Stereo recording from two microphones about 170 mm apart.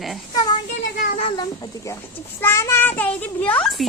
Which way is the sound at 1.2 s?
25° left (ahead or behind).